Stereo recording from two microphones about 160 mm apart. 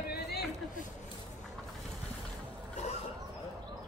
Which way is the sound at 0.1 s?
90° left.